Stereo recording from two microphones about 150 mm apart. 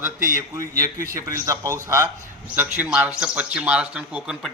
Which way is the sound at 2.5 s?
10° right (ahead or behind).